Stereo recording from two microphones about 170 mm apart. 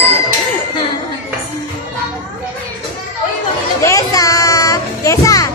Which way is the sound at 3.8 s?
20° left (ahead or behind).